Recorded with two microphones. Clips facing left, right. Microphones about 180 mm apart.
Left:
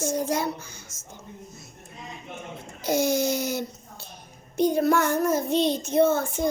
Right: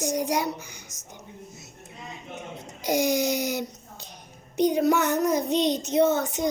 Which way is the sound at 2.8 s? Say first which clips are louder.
Even; 15° right (ahead or behind).